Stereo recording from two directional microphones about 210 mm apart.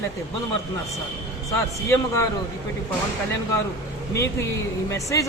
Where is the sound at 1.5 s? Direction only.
15° left (ahead or behind).